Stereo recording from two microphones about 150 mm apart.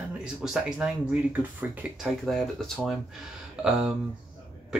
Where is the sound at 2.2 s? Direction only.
Centre (ahead or behind).